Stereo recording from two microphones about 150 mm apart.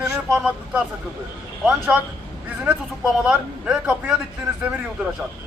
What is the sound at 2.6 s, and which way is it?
Speech, 5° right (ahead or behind).